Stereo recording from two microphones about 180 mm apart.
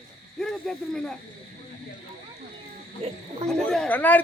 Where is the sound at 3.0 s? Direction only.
35° right (ahead or behind).